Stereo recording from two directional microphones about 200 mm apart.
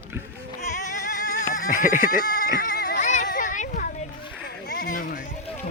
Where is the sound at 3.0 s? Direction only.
35° left (ahead or behind).